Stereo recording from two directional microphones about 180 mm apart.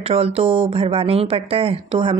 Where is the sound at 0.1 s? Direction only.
30° right (ahead or behind).